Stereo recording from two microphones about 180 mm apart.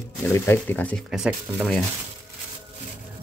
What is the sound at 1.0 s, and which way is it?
Speech, 5° right (ahead or behind).